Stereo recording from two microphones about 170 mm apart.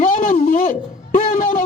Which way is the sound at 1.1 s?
50° left (ahead or behind).